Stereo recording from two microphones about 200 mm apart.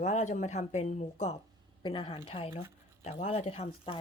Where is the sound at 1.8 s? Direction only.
25° left (ahead or behind).